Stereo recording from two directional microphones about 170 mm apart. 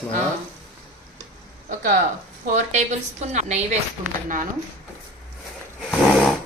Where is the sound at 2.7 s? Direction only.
45° right (ahead or behind).